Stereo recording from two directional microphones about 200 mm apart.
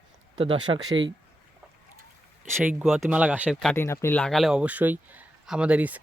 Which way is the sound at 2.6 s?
5° right (ahead or behind).